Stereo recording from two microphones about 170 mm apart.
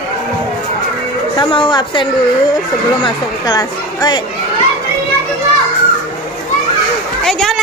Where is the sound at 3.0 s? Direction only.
20° left (ahead or behind).